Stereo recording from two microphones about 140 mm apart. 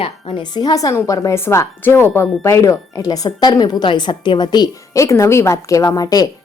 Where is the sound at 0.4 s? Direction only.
30° left (ahead or behind).